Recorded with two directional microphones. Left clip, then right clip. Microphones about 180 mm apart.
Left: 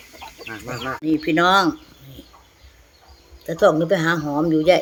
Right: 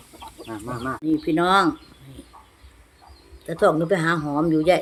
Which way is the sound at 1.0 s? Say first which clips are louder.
Left 3 dB; centre (ahead or behind).